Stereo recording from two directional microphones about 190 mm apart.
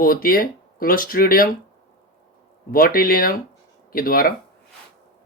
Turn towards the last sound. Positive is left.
turn(degrees=50)  # may be behind; listen again after turning